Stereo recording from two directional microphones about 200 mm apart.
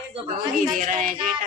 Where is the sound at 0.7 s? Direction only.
40° right (ahead or behind).